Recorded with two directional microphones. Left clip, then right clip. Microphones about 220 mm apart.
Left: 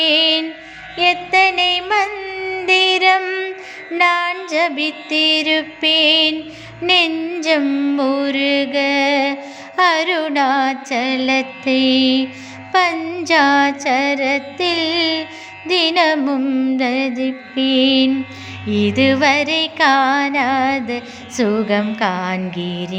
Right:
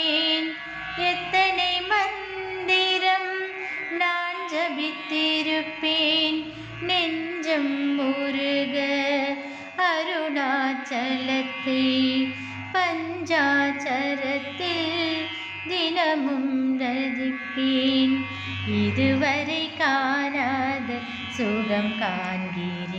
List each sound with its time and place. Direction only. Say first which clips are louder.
0.0 s music: left 9 dB; 40° left (ahead or behind)
6.8 s mantra: left 10 dB; 40° left (ahead or behind)
15.6 s music: left 9 dB; 45° left (ahead or behind)